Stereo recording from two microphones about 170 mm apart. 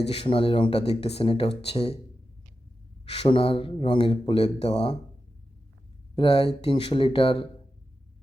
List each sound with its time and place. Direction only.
0.1 s speech: 35° left (ahead or behind)
3.1 s speech: 35° left (ahead or behind)
6.1 s speech: 35° left (ahead or behind)